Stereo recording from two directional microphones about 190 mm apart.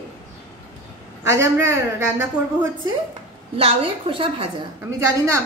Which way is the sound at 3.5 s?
30° right (ahead or behind).